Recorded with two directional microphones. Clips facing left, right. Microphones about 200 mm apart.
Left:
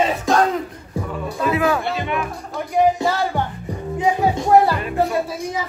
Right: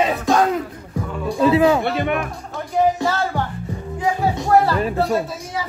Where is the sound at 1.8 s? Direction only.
55° right (ahead or behind).